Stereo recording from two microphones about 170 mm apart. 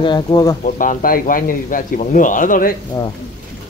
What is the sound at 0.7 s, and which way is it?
Speech, 50° left (ahead or behind).